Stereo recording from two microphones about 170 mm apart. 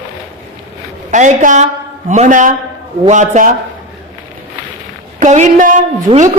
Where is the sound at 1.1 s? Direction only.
45° right (ahead or behind).